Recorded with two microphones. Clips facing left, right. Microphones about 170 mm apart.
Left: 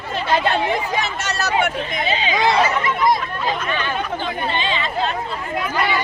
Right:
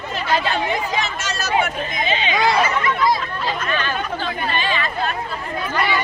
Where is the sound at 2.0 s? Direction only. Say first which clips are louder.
Even; 35° left (ahead or behind).